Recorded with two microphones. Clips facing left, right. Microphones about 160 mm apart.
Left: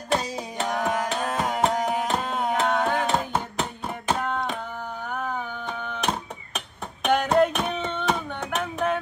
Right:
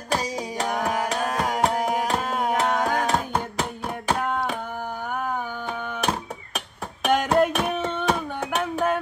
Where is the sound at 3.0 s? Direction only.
Centre (ahead or behind).